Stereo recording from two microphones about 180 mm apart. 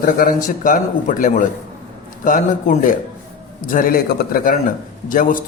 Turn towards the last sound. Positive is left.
turn(degrees=50)  # may be behind; listen again after turning